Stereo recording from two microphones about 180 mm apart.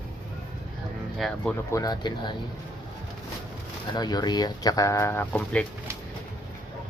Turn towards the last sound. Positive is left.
turn(degrees=10)  # may be behind; listen again after turning